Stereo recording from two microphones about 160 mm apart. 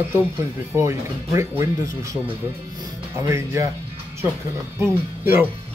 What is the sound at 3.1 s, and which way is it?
Speech, 20° right (ahead or behind).